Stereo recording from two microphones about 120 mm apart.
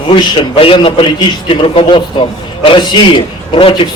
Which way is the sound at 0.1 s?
45° left (ahead or behind).